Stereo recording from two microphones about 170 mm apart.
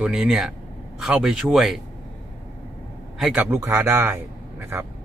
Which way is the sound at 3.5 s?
15° right (ahead or behind).